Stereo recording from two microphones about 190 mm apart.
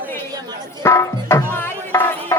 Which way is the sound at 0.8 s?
15° left (ahead or behind).